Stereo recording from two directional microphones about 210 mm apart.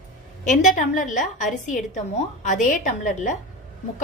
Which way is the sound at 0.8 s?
35° left (ahead or behind).